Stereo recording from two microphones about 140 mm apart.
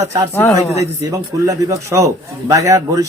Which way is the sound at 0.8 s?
25° right (ahead or behind).